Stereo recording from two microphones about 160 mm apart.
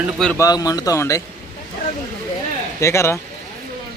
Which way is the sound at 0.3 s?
20° left (ahead or behind).